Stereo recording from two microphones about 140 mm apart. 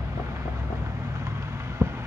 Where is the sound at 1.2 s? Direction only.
20° right (ahead or behind).